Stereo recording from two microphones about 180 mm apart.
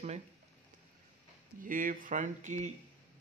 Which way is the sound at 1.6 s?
50° right (ahead or behind).